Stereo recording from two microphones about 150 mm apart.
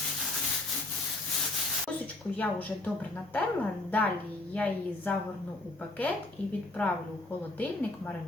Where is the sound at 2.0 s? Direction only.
10° left (ahead or behind).